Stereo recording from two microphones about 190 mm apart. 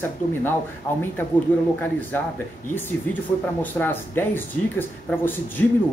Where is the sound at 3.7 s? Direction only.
10° left (ahead or behind).